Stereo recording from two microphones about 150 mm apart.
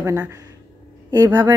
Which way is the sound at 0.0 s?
15° right (ahead or behind).